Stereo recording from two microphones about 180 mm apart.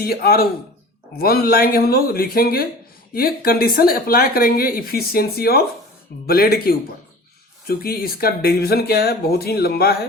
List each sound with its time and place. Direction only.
0.0 s speech: 55° left (ahead or behind)